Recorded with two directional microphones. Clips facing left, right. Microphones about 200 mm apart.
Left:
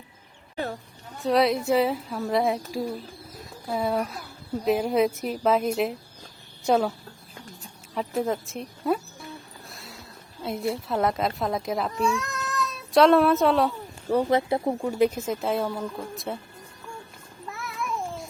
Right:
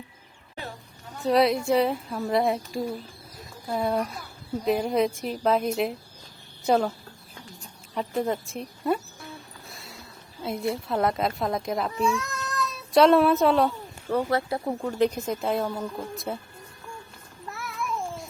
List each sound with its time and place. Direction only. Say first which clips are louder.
1.2 s a woman's voice: even; centre (ahead or behind)
3.3 s chicken: even; centre (ahead or behind)
4.6 s a woman's voice: left 1 dB; centre (ahead or behind)
7.9 s a woman's voice: even; centre (ahead or behind)
14.1 s speech: left 3 dB; 15° left (ahead or behind)
14.8 s a woman's voice: left 1 dB; 10° left (ahead or behind)
17.5 s babbling: even; centre (ahead or behind)